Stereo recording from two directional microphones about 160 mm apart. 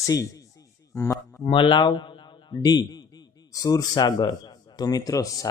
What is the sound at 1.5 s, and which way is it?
A man's voice, 30° left (ahead or behind).